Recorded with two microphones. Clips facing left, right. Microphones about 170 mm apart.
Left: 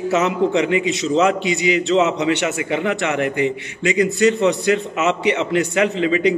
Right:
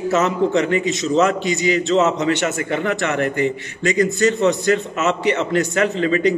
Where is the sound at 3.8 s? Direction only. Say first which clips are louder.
Left 1 dB; 45° right (ahead or behind).